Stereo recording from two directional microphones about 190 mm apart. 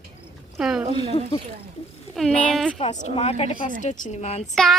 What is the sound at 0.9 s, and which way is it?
Speech, 35° left (ahead or behind).